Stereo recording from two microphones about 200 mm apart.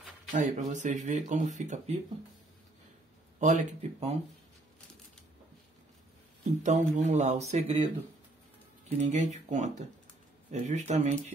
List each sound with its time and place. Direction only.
0.3 s speech: 40° right (ahead or behind)
3.3 s speech: 35° right (ahead or behind)
6.6 s speech: 35° right (ahead or behind)
8.8 s speech: 35° right (ahead or behind)